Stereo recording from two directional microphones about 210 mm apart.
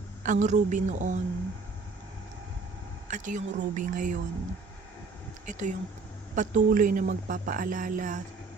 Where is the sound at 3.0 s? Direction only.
35° right (ahead or behind).